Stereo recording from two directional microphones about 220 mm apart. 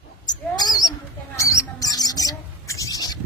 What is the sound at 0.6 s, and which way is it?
Mouse, 15° left (ahead or behind).